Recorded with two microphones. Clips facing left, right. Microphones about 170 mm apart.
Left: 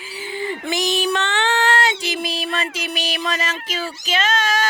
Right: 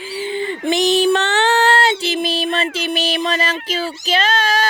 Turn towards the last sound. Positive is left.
turn(degrees=-30)  # may be behind; listen again after turning